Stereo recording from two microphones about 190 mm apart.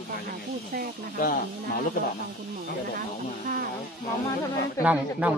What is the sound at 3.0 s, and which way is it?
Speech, 50° right (ahead or behind).